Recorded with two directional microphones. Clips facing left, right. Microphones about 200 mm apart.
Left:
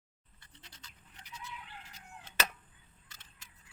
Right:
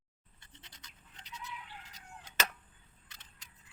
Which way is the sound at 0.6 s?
20° right (ahead or behind).